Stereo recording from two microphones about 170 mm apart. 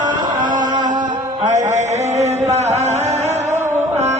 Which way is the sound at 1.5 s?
45° right (ahead or behind).